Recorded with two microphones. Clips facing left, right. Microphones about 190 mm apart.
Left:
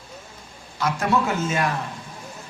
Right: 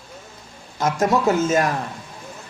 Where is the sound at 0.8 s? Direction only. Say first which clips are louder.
Right 3 dB; 45° right (ahead or behind).